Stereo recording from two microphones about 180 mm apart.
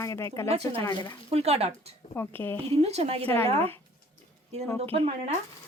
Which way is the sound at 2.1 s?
10° left (ahead or behind).